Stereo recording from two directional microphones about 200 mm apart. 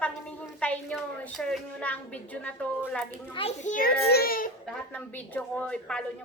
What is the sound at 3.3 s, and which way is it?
A child's voice, 30° left (ahead or behind).